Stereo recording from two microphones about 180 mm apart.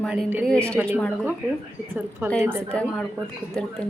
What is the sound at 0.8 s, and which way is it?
Speech, 10° right (ahead or behind).